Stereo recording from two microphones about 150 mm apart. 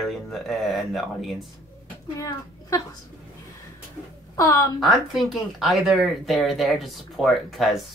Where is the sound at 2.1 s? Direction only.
20° left (ahead or behind).